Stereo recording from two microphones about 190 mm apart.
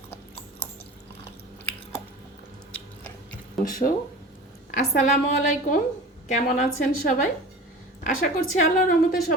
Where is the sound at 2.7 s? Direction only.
10° left (ahead or behind).